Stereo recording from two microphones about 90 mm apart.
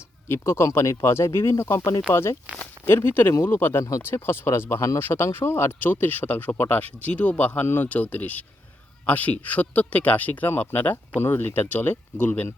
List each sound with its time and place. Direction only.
0.3 s speech: 30° left (ahead or behind)